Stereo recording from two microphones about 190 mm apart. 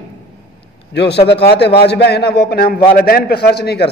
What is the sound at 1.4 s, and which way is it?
A man's voice, 60° left (ahead or behind).